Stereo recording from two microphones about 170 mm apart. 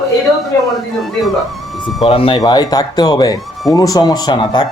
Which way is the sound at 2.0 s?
30° left (ahead or behind).